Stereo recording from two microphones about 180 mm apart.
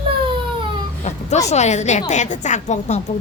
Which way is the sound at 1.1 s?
40° left (ahead or behind).